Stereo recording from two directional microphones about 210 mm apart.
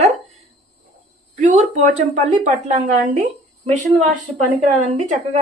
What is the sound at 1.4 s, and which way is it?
Speech, 35° right (ahead or behind).